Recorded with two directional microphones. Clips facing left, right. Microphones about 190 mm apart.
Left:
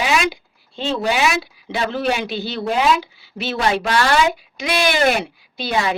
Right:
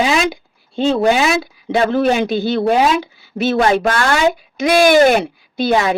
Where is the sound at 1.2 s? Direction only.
45° right (ahead or behind).